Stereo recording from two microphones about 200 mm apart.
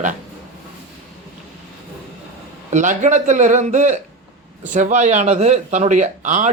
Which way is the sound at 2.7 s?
35° right (ahead or behind).